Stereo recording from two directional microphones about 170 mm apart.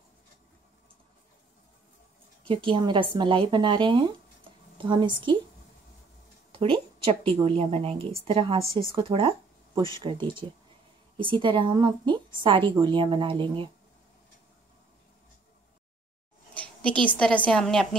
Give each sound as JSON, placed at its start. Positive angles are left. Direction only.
{"t": 2.4, "sound": "a woman's voice", "side_deg": -30}
{"t": 6.5, "sound": "a woman's voice", "side_deg": -30}
{"t": 16.5, "sound": "a woman's voice", "side_deg": 5}